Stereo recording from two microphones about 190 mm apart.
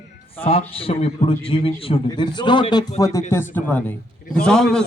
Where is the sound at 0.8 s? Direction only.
30° left (ahead or behind).